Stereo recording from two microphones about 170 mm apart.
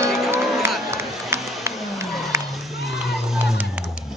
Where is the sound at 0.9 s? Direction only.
15° right (ahead or behind).